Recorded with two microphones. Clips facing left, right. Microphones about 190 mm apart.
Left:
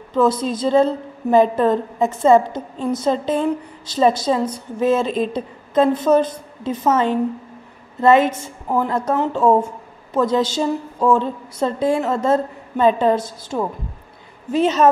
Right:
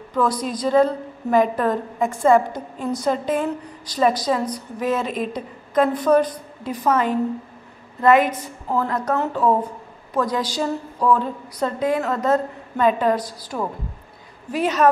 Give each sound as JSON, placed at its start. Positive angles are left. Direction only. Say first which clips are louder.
{"t": 0.1, "sound": "a woman's voice", "louder": "left 4 dB", "side_deg": 25}